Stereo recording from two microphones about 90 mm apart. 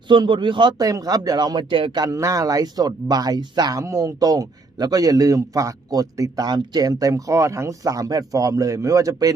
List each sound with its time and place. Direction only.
0.1 s a man's voice: 60° right (ahead or behind)
0.8 s speech: 45° right (ahead or behind); by 2.0 s 60° right (ahead or behind)
2.0 s speech: 40° right (ahead or behind)